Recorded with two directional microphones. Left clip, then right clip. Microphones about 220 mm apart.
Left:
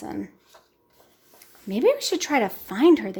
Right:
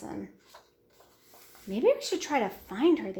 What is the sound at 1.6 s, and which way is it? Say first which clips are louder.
Speech: left 5 dB; 50° left (ahead or behind).